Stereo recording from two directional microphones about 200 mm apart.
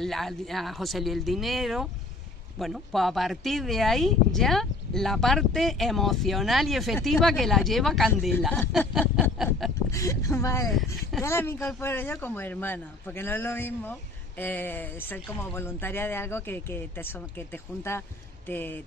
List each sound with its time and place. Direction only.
0.0 s speech: centre (ahead or behind)
9.8 s speech: 15° left (ahead or behind)